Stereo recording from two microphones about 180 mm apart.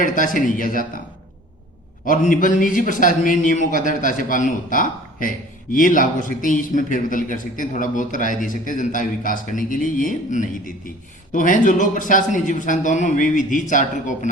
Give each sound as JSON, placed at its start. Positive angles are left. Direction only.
{"t": 0.0, "sound": "a man's voice", "side_deg": 45}
{"t": 2.0, "sound": "a man's voice", "side_deg": 50}